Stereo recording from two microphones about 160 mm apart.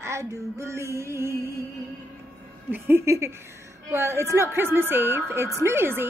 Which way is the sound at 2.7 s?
15° right (ahead or behind).